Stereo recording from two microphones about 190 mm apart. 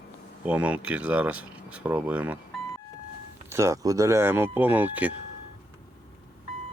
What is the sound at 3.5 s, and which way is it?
Speech, 15° right (ahead or behind).